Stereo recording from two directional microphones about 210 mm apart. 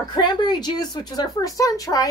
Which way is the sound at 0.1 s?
20° left (ahead or behind).